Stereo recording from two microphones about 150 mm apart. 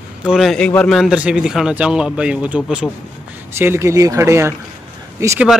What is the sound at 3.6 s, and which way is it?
Speech, 15° right (ahead or behind).